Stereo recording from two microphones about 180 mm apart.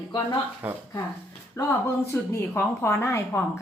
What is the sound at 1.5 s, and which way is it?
A woman's voice, 15° left (ahead or behind).